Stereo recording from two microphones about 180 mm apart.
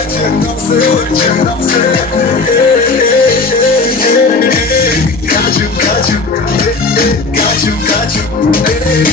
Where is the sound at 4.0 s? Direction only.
55° left (ahead or behind).